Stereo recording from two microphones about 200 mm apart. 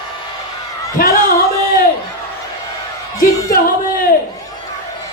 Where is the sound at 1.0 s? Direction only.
45° left (ahead or behind).